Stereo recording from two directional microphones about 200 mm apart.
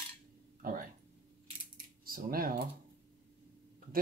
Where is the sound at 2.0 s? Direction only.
45° right (ahead or behind).